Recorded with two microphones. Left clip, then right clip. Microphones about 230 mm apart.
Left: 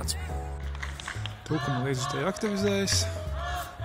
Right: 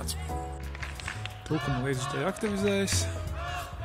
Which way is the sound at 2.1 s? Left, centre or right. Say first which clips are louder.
Left 1 dB; centre.